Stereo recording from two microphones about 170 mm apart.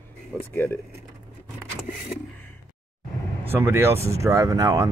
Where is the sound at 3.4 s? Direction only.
15° right (ahead or behind).